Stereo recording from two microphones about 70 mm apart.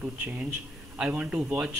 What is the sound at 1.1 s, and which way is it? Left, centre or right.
Speech, right.